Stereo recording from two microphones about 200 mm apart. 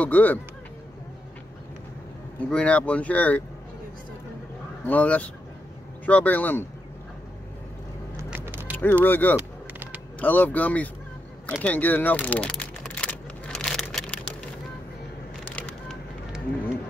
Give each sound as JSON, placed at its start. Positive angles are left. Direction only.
{"t": 0.0, "sound": "speech", "side_deg": 10}
{"t": 2.5, "sound": "speech", "side_deg": 5}
{"t": 4.8, "sound": "speech", "side_deg": 5}
{"t": 8.2, "sound": "music", "side_deg": -10}
{"t": 8.7, "sound": "speech", "side_deg": 10}
{"t": 9.4, "sound": "a sound", "side_deg": -10}
{"t": 10.2, "sound": "speech", "side_deg": 10}
{"t": 11.6, "sound": "a sound", "side_deg": 10}
{"t": 15.5, "sound": "a sound", "side_deg": 5}